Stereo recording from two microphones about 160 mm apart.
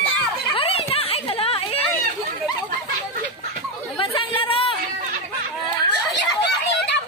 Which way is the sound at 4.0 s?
35° left (ahead or behind).